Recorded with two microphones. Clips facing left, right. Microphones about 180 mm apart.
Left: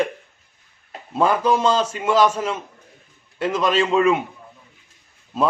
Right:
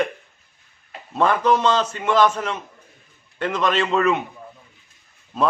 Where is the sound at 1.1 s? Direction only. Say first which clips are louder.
Even; 10° left (ahead or behind).